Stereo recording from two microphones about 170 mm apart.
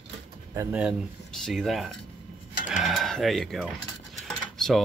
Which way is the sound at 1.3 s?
Centre (ahead or behind).